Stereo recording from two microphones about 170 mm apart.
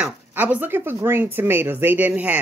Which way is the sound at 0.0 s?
10° right (ahead or behind).